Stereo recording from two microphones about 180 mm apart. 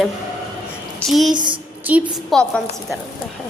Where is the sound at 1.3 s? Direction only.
25° right (ahead or behind).